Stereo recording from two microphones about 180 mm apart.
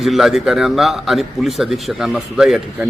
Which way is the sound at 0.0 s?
Centre (ahead or behind).